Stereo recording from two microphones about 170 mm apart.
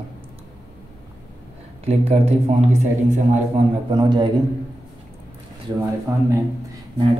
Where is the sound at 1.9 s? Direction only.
40° right (ahead or behind).